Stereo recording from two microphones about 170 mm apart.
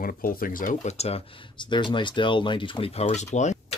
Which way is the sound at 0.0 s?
60° left (ahead or behind).